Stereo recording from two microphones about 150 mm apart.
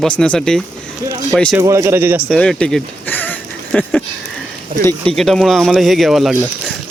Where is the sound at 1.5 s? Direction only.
20° right (ahead or behind).